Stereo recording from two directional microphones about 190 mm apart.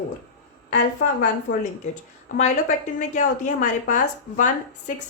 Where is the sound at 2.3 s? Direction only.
40° left (ahead or behind).